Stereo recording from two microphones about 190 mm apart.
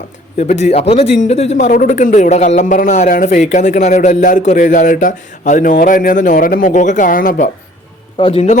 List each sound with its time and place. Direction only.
0.3 s a man's voice: 35° left (ahead or behind)